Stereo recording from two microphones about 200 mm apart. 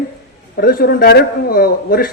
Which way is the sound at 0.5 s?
50° left (ahead or behind).